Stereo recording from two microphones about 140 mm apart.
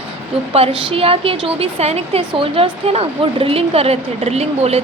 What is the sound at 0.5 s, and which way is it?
A woman's voice, 45° right (ahead or behind).